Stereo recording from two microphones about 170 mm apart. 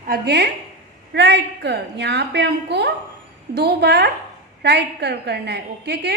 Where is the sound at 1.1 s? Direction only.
90° right.